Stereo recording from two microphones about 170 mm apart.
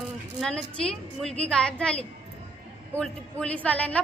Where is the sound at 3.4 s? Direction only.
10° left (ahead or behind).